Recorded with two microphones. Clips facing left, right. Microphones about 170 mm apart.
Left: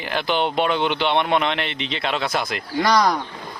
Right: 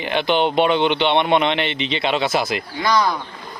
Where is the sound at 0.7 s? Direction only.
25° right (ahead or behind).